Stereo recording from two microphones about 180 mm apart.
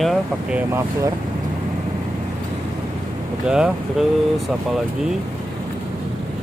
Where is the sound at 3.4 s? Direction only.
5° right (ahead or behind).